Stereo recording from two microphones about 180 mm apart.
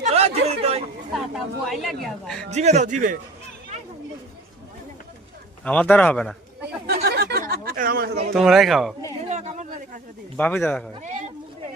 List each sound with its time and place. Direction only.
0.0 s chatter: 35° right (ahead or behind)
1.3 s a man's voice: centre (ahead or behind)
2.5 s a man's voice: 40° right (ahead or behind)
5.6 s speech: 5° left (ahead or behind)
6.8 s chatter: 60° right (ahead or behind)
8.3 s a man's voice: centre (ahead or behind)
9.3 s a sound: 40° right (ahead or behind)
10.3 s speech: 10° left (ahead or behind)